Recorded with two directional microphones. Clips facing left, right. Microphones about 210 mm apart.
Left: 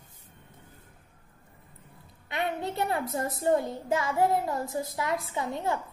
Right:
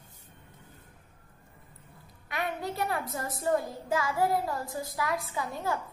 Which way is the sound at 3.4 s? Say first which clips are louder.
Left 3 dB; 25° left (ahead or behind).